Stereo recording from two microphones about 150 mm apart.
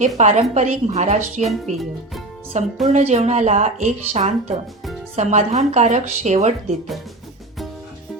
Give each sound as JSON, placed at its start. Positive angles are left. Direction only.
{"t": 0.2, "sound": "speech", "side_deg": -50}
{"t": 1.5, "sound": "speech", "side_deg": 0}
{"t": 2.8, "sound": "speech", "side_deg": -50}